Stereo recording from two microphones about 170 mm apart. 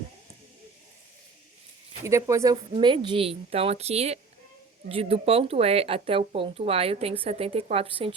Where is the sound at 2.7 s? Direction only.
30° right (ahead or behind).